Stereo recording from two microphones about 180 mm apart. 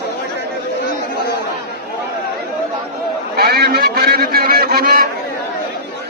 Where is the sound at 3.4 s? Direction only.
60° right (ahead or behind).